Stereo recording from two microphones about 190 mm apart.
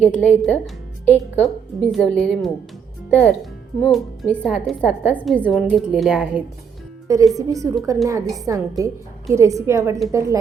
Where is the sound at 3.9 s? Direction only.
5° left (ahead or behind).